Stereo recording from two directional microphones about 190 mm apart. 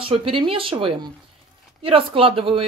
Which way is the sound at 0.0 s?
30° right (ahead or behind).